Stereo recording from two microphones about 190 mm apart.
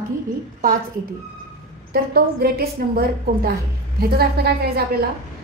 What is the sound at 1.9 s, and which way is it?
A woman's voice, 55° right (ahead or behind).